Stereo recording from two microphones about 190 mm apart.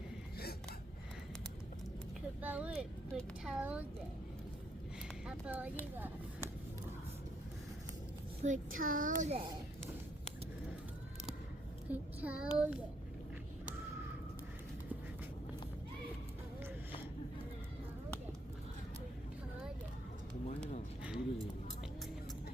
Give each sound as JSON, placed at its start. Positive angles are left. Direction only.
{"t": 2.4, "sound": "a child's voice", "side_deg": -5}
{"t": 5.2, "sound": "speech", "side_deg": -5}
{"t": 8.4, "sound": "a child's voice", "side_deg": -40}
{"t": 11.9, "sound": "a child's voice", "side_deg": -5}
{"t": 21.0, "sound": "a sound", "side_deg": 0}